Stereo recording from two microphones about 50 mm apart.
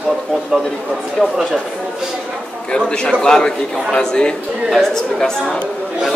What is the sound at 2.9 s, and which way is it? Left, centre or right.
A man's voice, centre.